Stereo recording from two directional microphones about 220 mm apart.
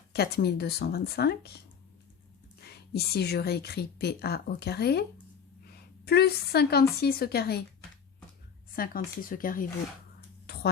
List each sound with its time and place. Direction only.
0.1 s speech: 45° left (ahead or behind)
2.6 s speech: 45° left (ahead or behind)
6.1 s speech: 45° left (ahead or behind)
8.7 s speech: 40° left (ahead or behind)
10.4 s a sound: 45° left (ahead or behind)